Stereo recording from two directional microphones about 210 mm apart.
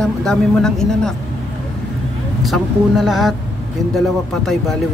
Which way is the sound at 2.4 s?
Centre (ahead or behind).